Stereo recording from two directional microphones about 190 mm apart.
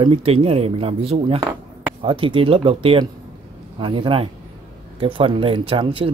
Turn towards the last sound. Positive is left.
turn(degrees=-25)  # may be behind; listen again after turning